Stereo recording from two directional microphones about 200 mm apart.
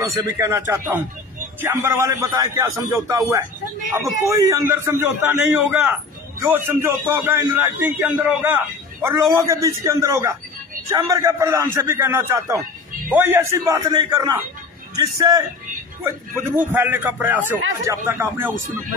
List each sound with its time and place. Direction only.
0.0 s a man's voice: 15° right (ahead or behind)
16.7 s a man's voice: 10° right (ahead or behind)